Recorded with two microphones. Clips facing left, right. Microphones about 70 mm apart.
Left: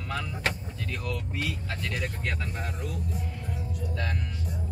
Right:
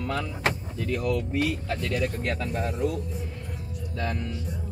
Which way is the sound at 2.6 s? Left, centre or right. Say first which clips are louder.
Right 8 dB; right.